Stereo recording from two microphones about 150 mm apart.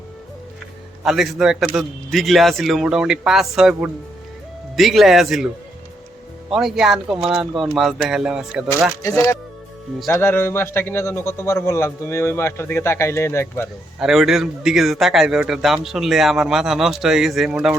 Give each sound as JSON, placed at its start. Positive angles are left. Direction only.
{"t": 1.0, "sound": "a man's voice", "side_deg": 0}
{"t": 6.5, "sound": "a man's voice", "side_deg": 0}
{"t": 9.0, "sound": "a man's voice", "side_deg": 20}
{"t": 14.0, "sound": "a man's voice", "side_deg": 0}